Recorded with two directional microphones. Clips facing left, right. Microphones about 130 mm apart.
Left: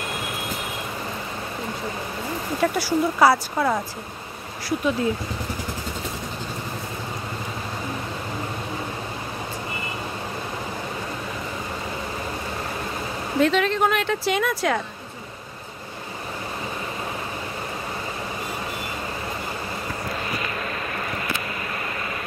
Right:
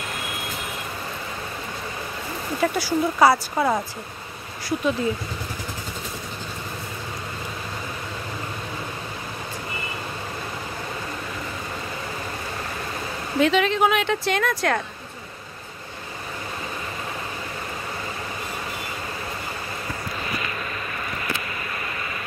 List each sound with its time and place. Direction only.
2.6 s speech: centre (ahead or behind)
4.6 s speech: centre (ahead or behind)
13.4 s speech: centre (ahead or behind)